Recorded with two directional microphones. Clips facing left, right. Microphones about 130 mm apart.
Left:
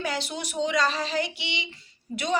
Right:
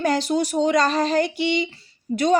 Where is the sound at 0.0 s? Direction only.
40° right (ahead or behind).